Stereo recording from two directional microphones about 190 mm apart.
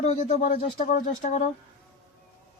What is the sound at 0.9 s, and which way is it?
Speech, 45° left (ahead or behind).